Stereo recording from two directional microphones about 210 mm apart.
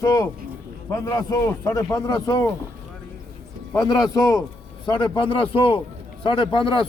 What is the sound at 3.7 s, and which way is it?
A man's voice, 20° left (ahead or behind).